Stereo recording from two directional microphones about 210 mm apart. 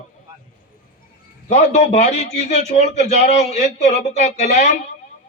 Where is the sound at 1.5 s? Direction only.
35° left (ahead or behind).